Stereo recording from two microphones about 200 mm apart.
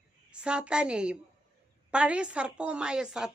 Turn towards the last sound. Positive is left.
turn(degrees=-5)  # may be behind; listen again after turning